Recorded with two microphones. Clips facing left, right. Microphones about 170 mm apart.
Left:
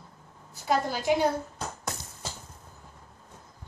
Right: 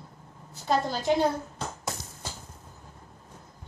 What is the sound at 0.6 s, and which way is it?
Speech, 10° left (ahead or behind).